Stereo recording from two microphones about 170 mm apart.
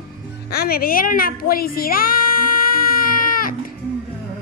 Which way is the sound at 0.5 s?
65° left (ahead or behind).